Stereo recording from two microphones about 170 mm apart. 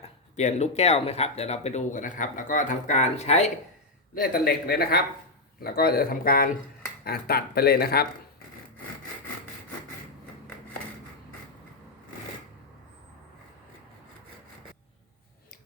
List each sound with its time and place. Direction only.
0.0 s speech: 40° left (ahead or behind)
4.1 s speech: 60° left (ahead or behind)